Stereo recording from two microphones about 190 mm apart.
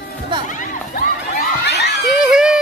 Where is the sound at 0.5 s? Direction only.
45° left (ahead or behind).